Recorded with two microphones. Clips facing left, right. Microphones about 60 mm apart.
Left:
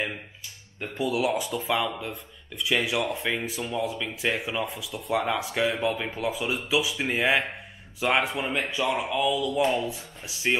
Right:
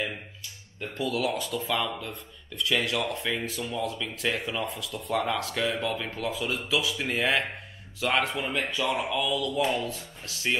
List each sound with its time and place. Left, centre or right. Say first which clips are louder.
0.7 s speech: left 2 dB; centre